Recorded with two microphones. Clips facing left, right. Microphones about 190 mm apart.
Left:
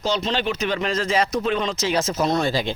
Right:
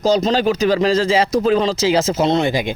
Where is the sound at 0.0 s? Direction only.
40° right (ahead or behind).